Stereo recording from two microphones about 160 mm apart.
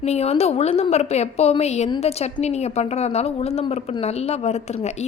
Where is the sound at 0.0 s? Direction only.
40° left (ahead or behind).